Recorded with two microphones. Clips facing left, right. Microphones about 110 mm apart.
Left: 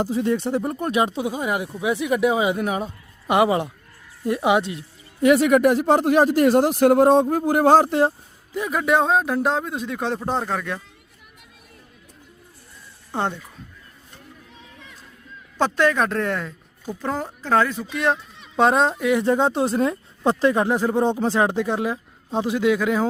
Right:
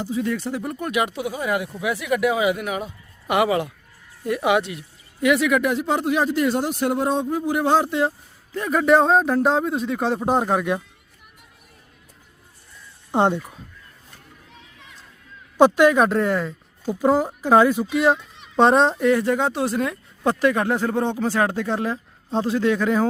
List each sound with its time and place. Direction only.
0.1 s speech: 25° left (ahead or behind)
5.2 s speech: 40° left (ahead or behind)
8.5 s a man's voice: 5° left (ahead or behind)
10.2 s speech: 15° right (ahead or behind)
13.1 s speech: 20° right (ahead or behind)
15.5 s speech: 10° right (ahead or behind)
16.8 s speech: 10° right (ahead or behind)
19.1 s speech: 25° left (ahead or behind); by 23.0 s 10° left (ahead or behind)